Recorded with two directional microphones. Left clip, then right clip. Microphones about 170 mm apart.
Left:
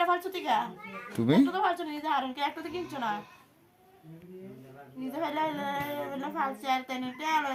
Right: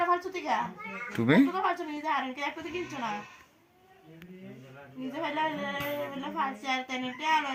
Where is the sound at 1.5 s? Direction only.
25° left (ahead or behind).